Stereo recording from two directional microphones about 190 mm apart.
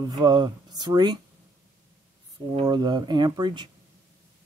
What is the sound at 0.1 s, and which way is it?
Speech, 20° right (ahead or behind).